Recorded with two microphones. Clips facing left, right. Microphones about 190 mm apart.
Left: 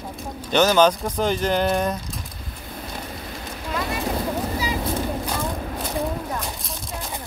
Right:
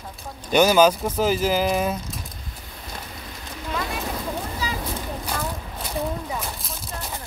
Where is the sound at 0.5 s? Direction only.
10° right (ahead or behind).